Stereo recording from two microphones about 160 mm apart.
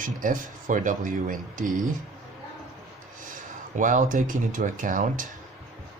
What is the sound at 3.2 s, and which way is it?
Speech, 55° right (ahead or behind).